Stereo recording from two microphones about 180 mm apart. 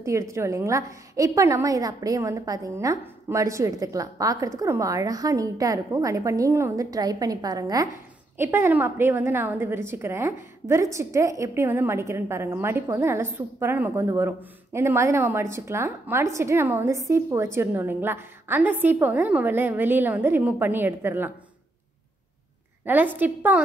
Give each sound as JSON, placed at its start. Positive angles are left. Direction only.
{"t": 0.0, "sound": "a woman's voice", "side_deg": -15}
{"t": 23.1, "sound": "a woman's voice", "side_deg": -10}